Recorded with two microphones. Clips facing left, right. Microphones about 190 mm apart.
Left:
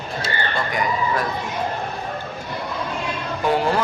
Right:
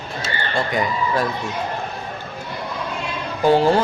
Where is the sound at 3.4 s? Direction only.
30° right (ahead or behind).